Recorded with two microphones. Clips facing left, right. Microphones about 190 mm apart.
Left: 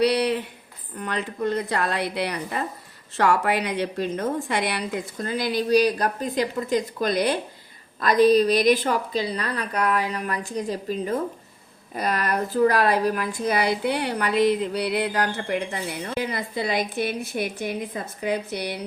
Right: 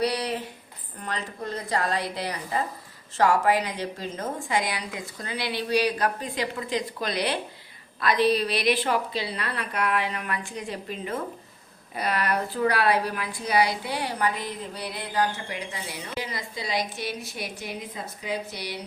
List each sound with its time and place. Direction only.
0.0 s a sound: 70° left (ahead or behind)
1.0 s a woman's voice: 65° left (ahead or behind)
4.9 s a woman's voice: 45° left (ahead or behind)